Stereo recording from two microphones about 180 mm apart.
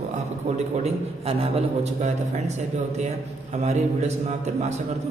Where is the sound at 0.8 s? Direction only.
35° right (ahead or behind).